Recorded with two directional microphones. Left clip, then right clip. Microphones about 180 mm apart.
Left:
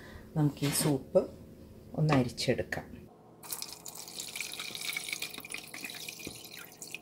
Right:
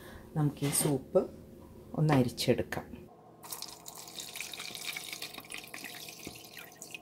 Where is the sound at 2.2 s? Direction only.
55° right (ahead or behind).